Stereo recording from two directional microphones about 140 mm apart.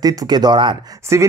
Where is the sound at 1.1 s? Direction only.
20° right (ahead or behind).